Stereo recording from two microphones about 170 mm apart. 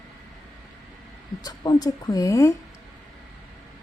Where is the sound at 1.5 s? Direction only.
25° left (ahead or behind).